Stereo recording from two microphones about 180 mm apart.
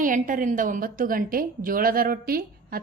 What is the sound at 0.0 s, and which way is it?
A woman's voice, 45° right (ahead or behind).